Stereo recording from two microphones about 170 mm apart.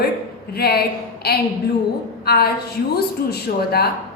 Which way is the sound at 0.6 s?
70° left (ahead or behind).